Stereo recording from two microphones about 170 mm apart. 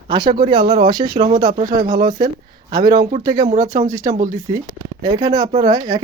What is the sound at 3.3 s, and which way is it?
Speech, 50° right (ahead or behind).